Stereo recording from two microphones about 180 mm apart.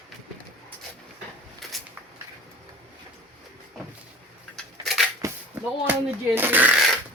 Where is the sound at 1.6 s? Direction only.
Centre (ahead or behind).